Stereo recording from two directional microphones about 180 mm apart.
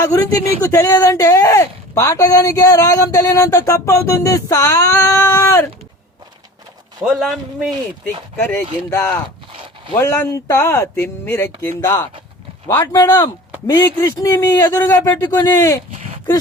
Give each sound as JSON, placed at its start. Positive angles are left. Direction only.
{"t": 0.0, "sound": "speech", "side_deg": 20}
{"t": 7.2, "sound": "speech", "side_deg": 0}
{"t": 8.4, "sound": "speech", "side_deg": 10}
{"t": 15.9, "sound": "a sound", "side_deg": -35}